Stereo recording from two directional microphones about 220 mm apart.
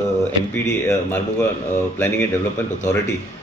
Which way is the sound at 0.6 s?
10° left (ahead or behind).